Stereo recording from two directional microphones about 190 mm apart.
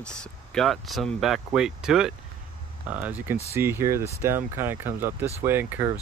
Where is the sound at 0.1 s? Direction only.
5° left (ahead or behind).